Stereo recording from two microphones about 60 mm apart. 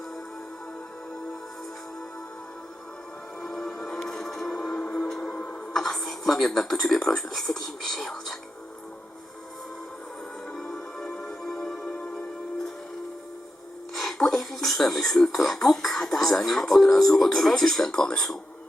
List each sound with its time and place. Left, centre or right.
3.4 s music: centre
5.7 s speech: centre
10.5 s music: centre
13.9 s speech: centre